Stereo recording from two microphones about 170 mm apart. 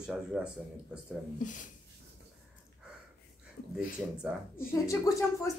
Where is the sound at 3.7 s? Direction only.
5° right (ahead or behind).